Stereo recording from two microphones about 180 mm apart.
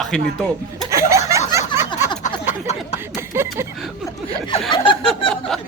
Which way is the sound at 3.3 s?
15° right (ahead or behind).